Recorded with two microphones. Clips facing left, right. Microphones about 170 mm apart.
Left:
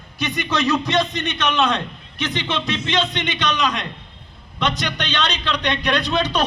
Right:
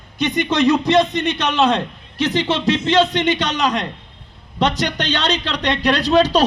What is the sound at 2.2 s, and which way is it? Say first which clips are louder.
A man's voice: right 6 dB; 40° right (ahead or behind).